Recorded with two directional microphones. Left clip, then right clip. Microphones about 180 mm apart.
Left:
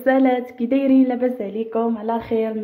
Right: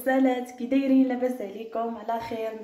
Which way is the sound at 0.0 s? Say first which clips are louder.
Left 7 dB; 40° left (ahead or behind).